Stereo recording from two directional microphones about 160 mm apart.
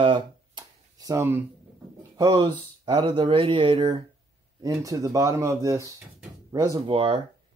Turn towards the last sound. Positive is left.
turn(degrees=-35)  # may be behind; listen again after turning